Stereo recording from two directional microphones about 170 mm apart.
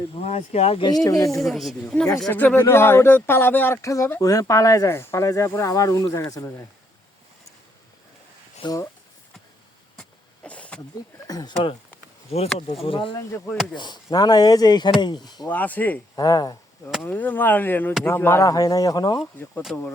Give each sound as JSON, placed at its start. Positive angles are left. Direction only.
{"t": 0.3, "sound": "speech", "side_deg": 40}
{"t": 0.9, "sound": "speech", "side_deg": 20}
{"t": 1.4, "sound": "a woman's voice", "side_deg": 0}
{"t": 8.6, "sound": "speech", "side_deg": 20}
{"t": 10.0, "sound": "vehicle", "side_deg": 5}
{"t": 11.3, "sound": "speech", "side_deg": 25}
{"t": 12.3, "sound": "speech", "side_deg": 40}
{"t": 13.1, "sound": "speech", "side_deg": 15}
{"t": 15.4, "sound": "speech", "side_deg": 10}
{"t": 16.1, "sound": "speech", "side_deg": 20}
{"t": 17.0, "sound": "speech", "side_deg": 10}